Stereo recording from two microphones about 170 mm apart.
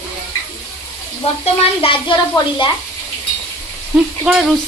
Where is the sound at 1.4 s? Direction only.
30° left (ahead or behind).